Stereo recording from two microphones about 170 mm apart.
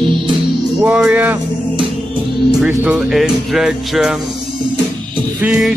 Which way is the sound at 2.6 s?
5° right (ahead or behind).